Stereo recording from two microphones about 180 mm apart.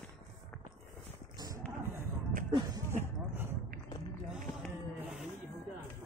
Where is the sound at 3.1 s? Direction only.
10° right (ahead or behind).